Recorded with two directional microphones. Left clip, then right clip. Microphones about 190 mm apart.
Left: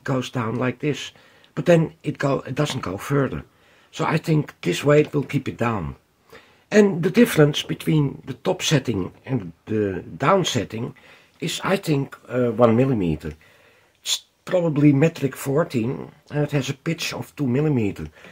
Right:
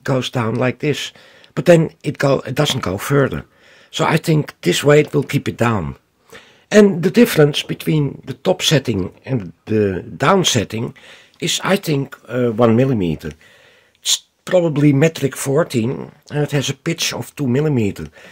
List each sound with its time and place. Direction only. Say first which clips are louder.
0.0 s speech: right 6 dB; 35° right (ahead or behind)